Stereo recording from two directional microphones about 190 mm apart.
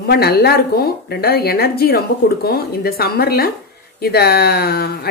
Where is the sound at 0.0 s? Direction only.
55° left (ahead or behind).